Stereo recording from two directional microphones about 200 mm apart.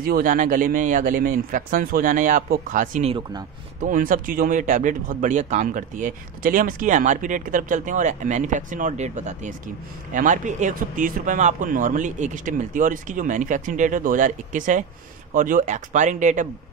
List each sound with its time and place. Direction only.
0.0 s speech: 45° right (ahead or behind); by 3.4 s 25° right (ahead or behind)
3.8 s speech: 40° right (ahead or behind)